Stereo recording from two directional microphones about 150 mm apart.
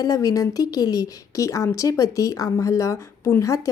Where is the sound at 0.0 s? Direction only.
20° left (ahead or behind).